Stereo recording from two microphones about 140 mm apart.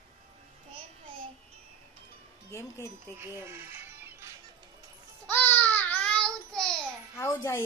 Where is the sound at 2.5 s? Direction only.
20° left (ahead or behind).